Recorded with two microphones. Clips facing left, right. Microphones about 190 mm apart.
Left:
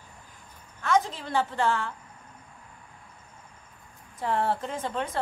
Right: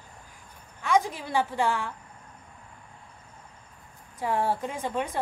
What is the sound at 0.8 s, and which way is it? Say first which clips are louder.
A woman's voice: right 1 dB; 10° right (ahead or behind).